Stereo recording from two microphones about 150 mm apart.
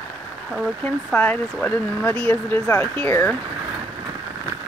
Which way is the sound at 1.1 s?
10° left (ahead or behind).